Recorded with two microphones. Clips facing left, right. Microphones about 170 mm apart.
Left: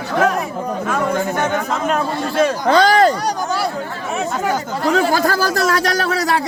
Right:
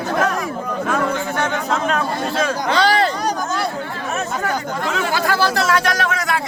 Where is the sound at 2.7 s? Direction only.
45° left (ahead or behind).